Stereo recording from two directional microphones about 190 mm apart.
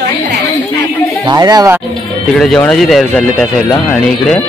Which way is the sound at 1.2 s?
20° right (ahead or behind).